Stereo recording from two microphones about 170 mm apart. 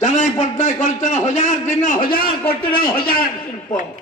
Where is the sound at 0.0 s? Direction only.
45° left (ahead or behind).